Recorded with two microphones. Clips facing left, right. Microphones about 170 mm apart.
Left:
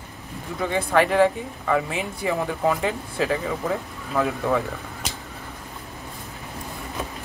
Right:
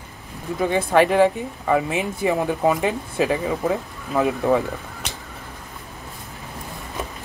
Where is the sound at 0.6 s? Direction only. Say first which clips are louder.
Right 3 dB; 20° right (ahead or behind).